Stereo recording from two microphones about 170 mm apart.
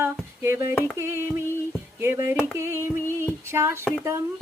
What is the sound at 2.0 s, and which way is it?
Female singing, 15° right (ahead or behind).